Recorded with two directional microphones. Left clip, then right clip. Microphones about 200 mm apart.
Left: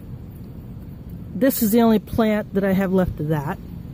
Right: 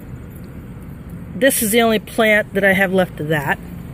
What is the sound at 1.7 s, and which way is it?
Speech, 20° left (ahead or behind).